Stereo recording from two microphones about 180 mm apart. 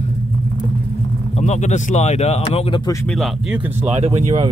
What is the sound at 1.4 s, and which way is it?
Speech, 40° left (ahead or behind).